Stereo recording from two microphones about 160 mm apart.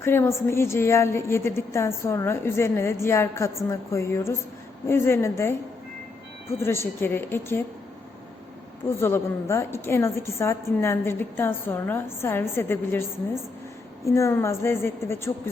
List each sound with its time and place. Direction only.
0.0 s a woman's voice: 15° left (ahead or behind)
6.6 s a woman's voice: 15° left (ahead or behind)
9.0 s a woman's voice: 15° left (ahead or behind)